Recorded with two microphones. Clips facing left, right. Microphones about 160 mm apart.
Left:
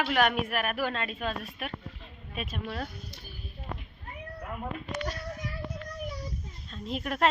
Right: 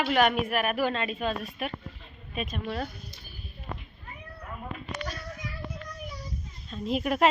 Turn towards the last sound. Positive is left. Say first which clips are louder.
# right 4 dB
turn(degrees=-10)  # may be behind; listen again after turning